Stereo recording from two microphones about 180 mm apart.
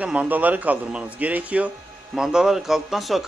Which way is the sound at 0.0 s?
5° right (ahead or behind).